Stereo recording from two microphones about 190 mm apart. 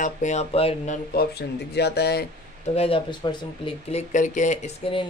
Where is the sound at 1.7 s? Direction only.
60° left (ahead or behind).